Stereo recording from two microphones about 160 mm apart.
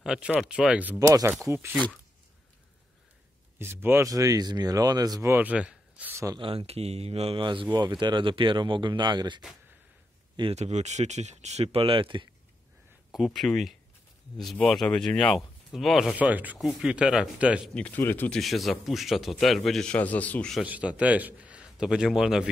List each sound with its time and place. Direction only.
0.0 s speech: 5° right (ahead or behind)
0.9 s a man's voice: 20° right (ahead or behind)
3.5 s speech: 15° right (ahead or behind)
6.4 s speech: 35° right (ahead or behind)
10.5 s speech: 45° right (ahead or behind)
13.1 s speech: centre (ahead or behind)
17.7 s speech: 10° left (ahead or behind)
18.4 s speech: centre (ahead or behind)
20.6 s a man's voice: 10° right (ahead or behind)